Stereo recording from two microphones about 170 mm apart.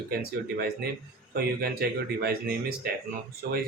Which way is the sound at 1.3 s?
65° right (ahead or behind).